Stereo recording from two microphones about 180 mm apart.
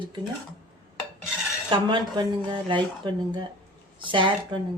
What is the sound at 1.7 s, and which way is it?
Speech, 25° right (ahead or behind).